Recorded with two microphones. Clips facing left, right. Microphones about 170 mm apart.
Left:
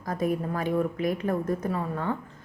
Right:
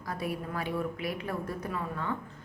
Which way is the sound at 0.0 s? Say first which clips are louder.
Left 7 dB; 45° left (ahead or behind).